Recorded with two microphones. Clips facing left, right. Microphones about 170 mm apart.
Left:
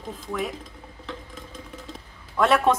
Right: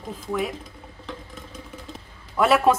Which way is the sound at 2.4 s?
5° right (ahead or behind).